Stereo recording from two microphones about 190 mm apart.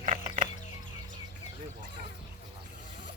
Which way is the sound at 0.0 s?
40° right (ahead or behind).